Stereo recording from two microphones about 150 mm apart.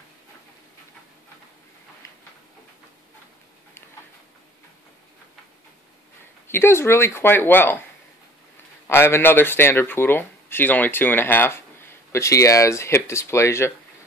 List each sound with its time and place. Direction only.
6.4 s speech: 15° left (ahead or behind)
8.8 s speech: 15° left (ahead or behind)